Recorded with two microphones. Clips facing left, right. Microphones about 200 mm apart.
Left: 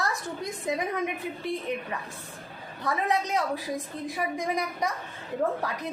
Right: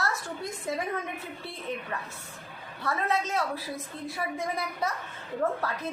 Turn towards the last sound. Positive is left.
turn(degrees=15)  # may be behind; listen again after turning